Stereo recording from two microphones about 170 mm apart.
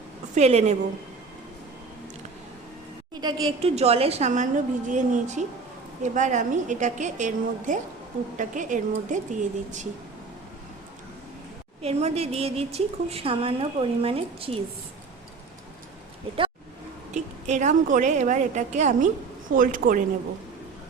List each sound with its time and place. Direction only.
0.3 s a woman's voice: 40° right (ahead or behind)
3.2 s a woman's voice: 30° right (ahead or behind); by 9.8 s 45° right (ahead or behind)
11.8 s a woman's voice: 40° right (ahead or behind)
17.2 s a woman's voice: 45° right (ahead or behind)